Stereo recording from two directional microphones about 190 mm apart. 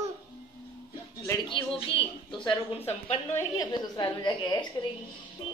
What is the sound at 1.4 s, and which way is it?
Speech, 30° left (ahead or behind).